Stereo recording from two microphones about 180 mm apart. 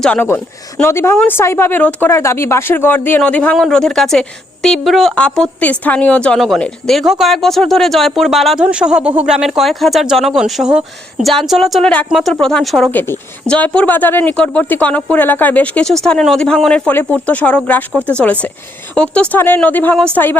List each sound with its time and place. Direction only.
0.0 s a woman's voice: 10° left (ahead or behind)